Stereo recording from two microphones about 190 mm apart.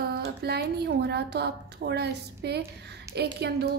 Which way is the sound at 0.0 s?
55° right (ahead or behind).